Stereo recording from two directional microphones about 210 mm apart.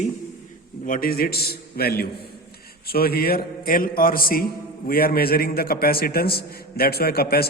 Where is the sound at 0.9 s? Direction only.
40° left (ahead or behind).